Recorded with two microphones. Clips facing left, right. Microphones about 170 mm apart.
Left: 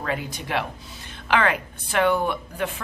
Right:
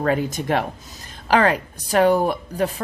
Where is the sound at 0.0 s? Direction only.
45° right (ahead or behind).